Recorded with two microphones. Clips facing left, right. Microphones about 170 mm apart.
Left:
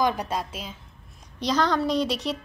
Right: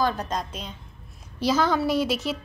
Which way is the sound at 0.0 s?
10° left (ahead or behind).